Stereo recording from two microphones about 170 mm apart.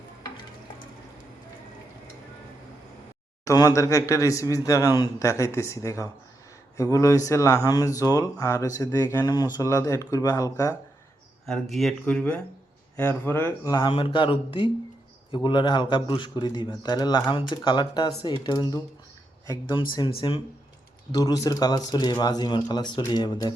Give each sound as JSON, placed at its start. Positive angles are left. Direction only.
{"t": 3.4, "sound": "speech", "side_deg": 20}
{"t": 11.7, "sound": "speech", "side_deg": 0}
{"t": 13.9, "sound": "speech", "side_deg": 30}